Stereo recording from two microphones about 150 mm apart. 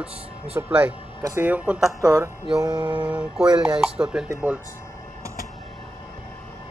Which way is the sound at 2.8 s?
30° right (ahead or behind).